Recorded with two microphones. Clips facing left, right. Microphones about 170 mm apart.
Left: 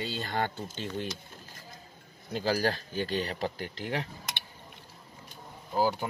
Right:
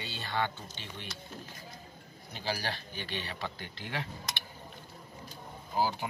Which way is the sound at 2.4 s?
45° left (ahead or behind).